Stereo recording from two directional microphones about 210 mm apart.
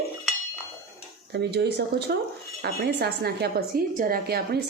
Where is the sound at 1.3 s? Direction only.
55° right (ahead or behind).